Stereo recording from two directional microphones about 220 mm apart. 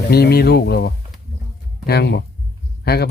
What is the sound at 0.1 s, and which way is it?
Speech, 45° left (ahead or behind).